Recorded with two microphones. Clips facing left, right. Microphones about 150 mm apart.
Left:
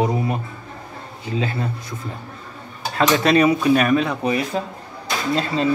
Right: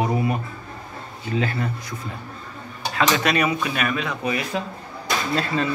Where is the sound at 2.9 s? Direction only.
30° left (ahead or behind).